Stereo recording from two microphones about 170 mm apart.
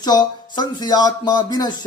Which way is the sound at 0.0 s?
25° left (ahead or behind).